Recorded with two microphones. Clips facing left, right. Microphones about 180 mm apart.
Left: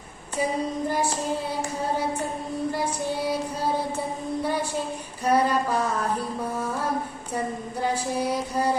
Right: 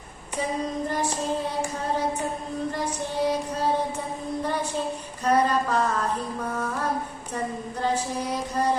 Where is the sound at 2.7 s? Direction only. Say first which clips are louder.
Left 1 dB; 10° left (ahead or behind).